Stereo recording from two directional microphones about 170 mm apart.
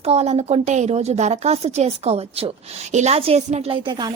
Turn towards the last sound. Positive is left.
turn(degrees=-25)  # may be behind; listen again after turning